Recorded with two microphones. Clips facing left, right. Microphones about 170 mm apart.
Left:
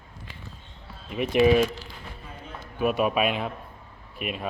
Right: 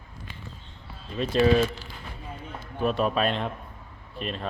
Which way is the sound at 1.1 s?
15° left (ahead or behind).